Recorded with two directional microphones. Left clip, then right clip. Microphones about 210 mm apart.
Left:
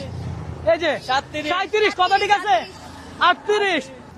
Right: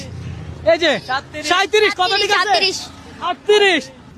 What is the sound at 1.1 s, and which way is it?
Speech, 20° left (ahead or behind).